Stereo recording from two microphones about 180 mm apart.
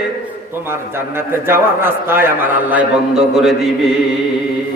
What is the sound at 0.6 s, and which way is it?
A man's voice, 15° right (ahead or behind).